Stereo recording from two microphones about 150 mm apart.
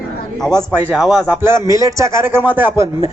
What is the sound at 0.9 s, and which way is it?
Speech, centre (ahead or behind).